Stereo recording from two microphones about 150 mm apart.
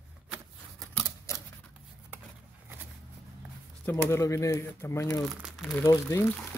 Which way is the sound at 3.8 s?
15° left (ahead or behind).